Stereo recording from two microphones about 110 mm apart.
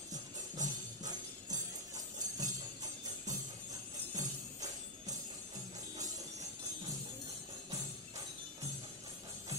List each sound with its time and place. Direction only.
0.1 s music: 35° right (ahead or behind)